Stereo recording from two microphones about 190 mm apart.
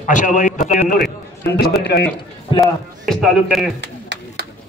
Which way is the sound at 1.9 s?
60° left (ahead or behind).